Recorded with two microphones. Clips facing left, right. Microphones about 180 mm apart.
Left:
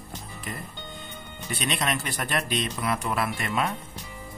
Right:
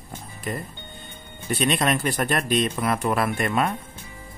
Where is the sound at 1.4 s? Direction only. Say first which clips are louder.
Right 6 dB; 50° right (ahead or behind).